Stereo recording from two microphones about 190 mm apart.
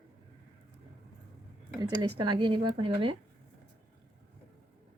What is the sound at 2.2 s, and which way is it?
Speech, 25° right (ahead or behind).